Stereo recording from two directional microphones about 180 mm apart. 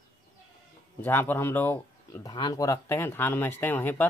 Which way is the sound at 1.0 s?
10° left (ahead or behind).